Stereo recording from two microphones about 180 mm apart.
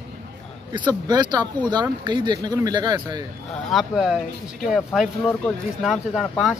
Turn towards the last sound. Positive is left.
turn(degrees=0)  # may be behind; listen again after turning